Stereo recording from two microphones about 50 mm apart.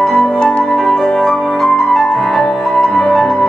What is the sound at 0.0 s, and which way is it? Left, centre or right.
Music, centre.